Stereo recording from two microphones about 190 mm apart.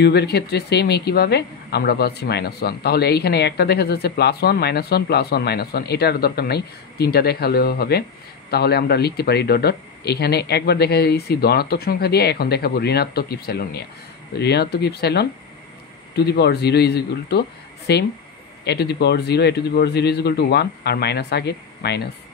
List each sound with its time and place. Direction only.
0.0 s speech: 60° left (ahead or behind)